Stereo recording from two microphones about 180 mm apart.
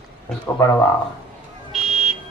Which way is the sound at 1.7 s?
5° right (ahead or behind).